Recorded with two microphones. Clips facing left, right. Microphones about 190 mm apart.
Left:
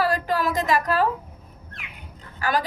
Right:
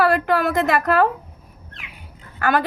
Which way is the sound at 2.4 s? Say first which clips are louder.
Right 4 dB; 60° right (ahead or behind).